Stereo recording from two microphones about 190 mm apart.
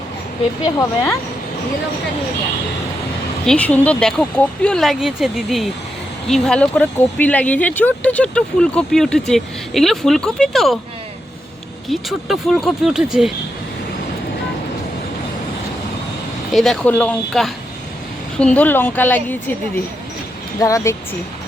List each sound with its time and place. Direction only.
0.6 s a woman's voice: 15° left (ahead or behind)
3.4 s speech: 5° left (ahead or behind)
11.9 s speech: centre (ahead or behind)
16.5 s a woman's voice: centre (ahead or behind); by 20.9 s 15° left (ahead or behind)